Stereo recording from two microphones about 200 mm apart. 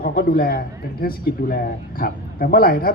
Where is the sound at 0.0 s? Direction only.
45° left (ahead or behind).